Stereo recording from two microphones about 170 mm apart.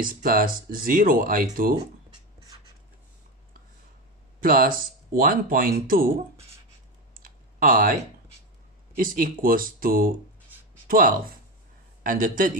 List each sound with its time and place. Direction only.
0.0 s speech: 55° right (ahead or behind)
4.4 s speech: 55° right (ahead or behind)
7.2 s clicking: 55° right (ahead or behind)
8.9 s a man's voice: 55° right (ahead or behind)